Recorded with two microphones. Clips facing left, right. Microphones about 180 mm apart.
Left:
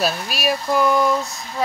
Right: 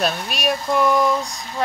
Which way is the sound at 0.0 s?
Centre (ahead or behind).